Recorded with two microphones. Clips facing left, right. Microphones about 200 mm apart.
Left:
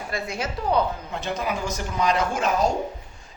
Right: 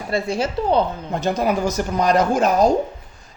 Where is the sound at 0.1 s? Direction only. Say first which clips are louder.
Right 9 dB; 30° right (ahead or behind).